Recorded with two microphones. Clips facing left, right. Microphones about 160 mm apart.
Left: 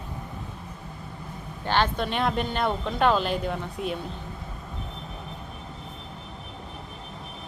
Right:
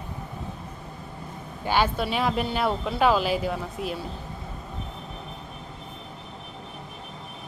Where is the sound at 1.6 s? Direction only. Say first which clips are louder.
Right 1 dB; 10° right (ahead or behind).